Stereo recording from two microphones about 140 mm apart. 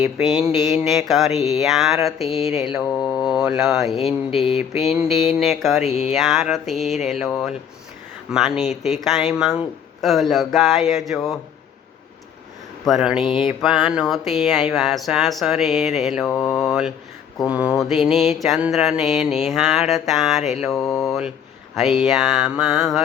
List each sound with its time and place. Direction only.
0.2 s speech: centre (ahead or behind)
5.9 s speech: 50° left (ahead or behind)
6.1 s speech: centre (ahead or behind)
8.6 s speech: 55° left (ahead or behind)
9.0 s speech: centre (ahead or behind)
12.8 s speech: 5° right (ahead or behind)
16.6 s mantra: 5° right (ahead or behind)
17.5 s speech: 5° right (ahead or behind)